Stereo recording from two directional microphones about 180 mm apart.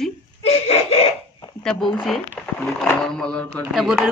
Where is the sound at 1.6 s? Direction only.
Centre (ahead or behind).